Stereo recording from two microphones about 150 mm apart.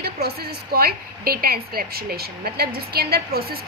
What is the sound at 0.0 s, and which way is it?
A woman's voice, 90° right.